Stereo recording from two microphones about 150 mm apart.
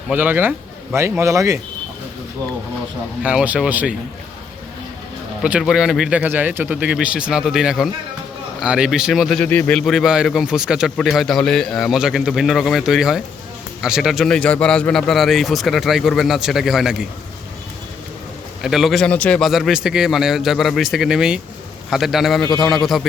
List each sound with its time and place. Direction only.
0.1 s speech: 10° right (ahead or behind)
3.2 s speech: 10° right (ahead or behind)
5.4 s a man's voice: 5° right (ahead or behind)
9.4 s a man's voice: 10° left (ahead or behind)
18.6 s a man's voice: centre (ahead or behind)